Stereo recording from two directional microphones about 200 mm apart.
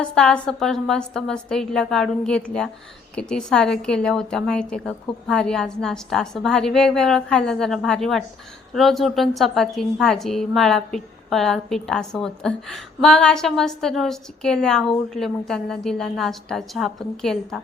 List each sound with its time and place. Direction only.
0.0 s a woman's voice: 5° left (ahead or behind)